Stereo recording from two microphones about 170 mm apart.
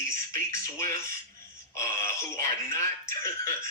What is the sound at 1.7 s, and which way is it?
Speech, 15° left (ahead or behind).